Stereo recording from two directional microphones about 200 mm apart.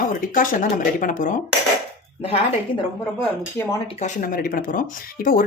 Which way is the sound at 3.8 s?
35° left (ahead or behind).